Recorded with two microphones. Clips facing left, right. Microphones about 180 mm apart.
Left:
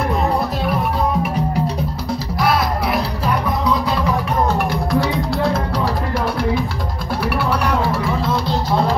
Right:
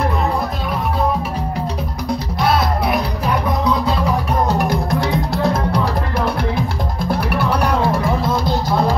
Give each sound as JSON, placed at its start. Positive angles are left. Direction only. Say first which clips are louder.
{"t": 2.4, "sound": "music", "louder": "right 1 dB", "side_deg": -25}
{"t": 4.5, "sound": "music", "louder": "right 1 dB", "side_deg": -45}